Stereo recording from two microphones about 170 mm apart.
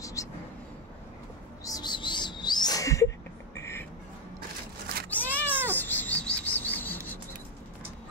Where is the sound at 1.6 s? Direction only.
20° left (ahead or behind).